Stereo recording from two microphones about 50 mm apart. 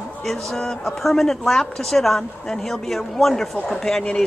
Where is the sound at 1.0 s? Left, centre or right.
Centre.